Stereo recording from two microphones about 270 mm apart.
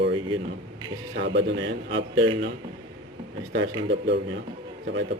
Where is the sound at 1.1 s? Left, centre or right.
Right.